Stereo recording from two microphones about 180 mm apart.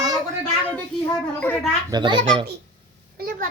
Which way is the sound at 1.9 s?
25° right (ahead or behind).